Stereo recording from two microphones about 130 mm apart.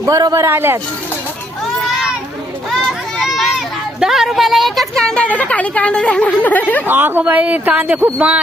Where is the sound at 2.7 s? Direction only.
Centre (ahead or behind).